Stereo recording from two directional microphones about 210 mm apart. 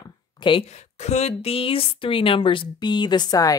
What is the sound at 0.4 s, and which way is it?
A woman's voice, 25° left (ahead or behind).